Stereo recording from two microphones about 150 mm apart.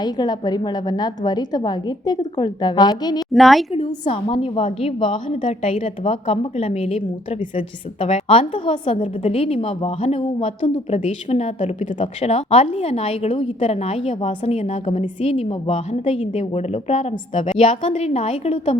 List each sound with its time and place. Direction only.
0.0 s a woman's voice: 25° left (ahead or behind)
3.3 s a woman's voice: centre (ahead or behind)
3.7 s a woman's voice: 40° left (ahead or behind)
5.5 s a woman's voice: 55° left (ahead or behind)
8.0 s a woman's voice: 40° left (ahead or behind)